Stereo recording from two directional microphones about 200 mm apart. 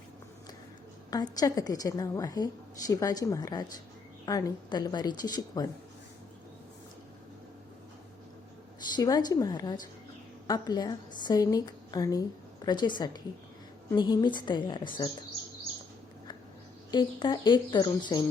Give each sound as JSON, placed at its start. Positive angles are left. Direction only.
{"t": 1.1, "sound": "a woman's voice", "side_deg": 20}
{"t": 9.0, "sound": "a woman's voice", "side_deg": 20}
{"t": 16.9, "sound": "a woman's voice", "side_deg": 20}